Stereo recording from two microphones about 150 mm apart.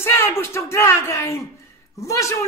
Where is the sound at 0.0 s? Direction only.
15° left (ahead or behind).